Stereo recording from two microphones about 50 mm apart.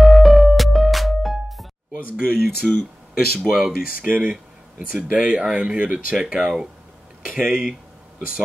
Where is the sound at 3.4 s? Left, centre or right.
Centre.